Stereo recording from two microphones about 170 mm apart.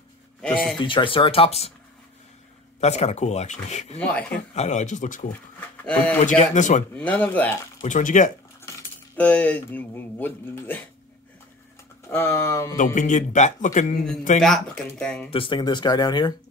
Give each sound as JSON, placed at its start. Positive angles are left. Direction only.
{"t": 0.4, "sound": "speech", "side_deg": 5}
{"t": 0.7, "sound": "speech", "side_deg": 30}
{"t": 2.8, "sound": "speech", "side_deg": 40}
{"t": 4.0, "sound": "speech", "side_deg": 10}
{"t": 4.6, "sound": "a man's voice", "side_deg": 45}
{"t": 5.9, "sound": "speech", "side_deg": 10}
{"t": 6.2, "sound": "a man's voice", "side_deg": 45}
{"t": 7.0, "sound": "speech", "side_deg": 10}
{"t": 7.8, "sound": "a man's voice", "side_deg": 45}
{"t": 9.1, "sound": "speech", "side_deg": 10}
{"t": 12.1, "sound": "speech", "side_deg": 15}
{"t": 12.7, "sound": "a man's voice", "side_deg": 50}
{"t": 14.4, "sound": "speech", "side_deg": 0}
{"t": 15.3, "sound": "speech", "side_deg": 30}